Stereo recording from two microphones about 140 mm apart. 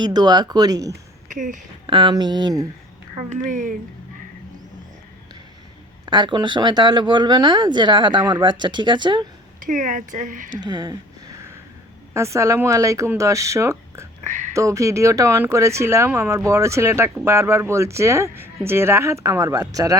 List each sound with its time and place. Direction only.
0.0 s speech: 30° right (ahead or behind)
1.3 s speech: 65° right (ahead or behind)
1.9 s speech: 35° right (ahead or behind)
3.2 s speech: 65° right (ahead or behind)
6.1 s speech: 35° right (ahead or behind)
9.6 s speech: 70° right (ahead or behind)
10.6 s speech: 30° right (ahead or behind)
12.1 s speech: 20° right (ahead or behind)
14.3 s speech: 60° right (ahead or behind)
14.5 s speech: 20° right (ahead or behind)